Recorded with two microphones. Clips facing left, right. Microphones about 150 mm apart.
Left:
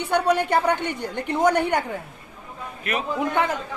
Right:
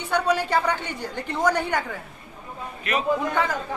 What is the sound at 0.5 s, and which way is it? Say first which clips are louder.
A woman's voice: left 3 dB; 20° left (ahead or behind).